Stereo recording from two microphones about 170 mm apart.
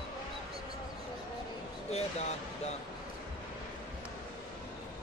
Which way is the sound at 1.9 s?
40° left (ahead or behind).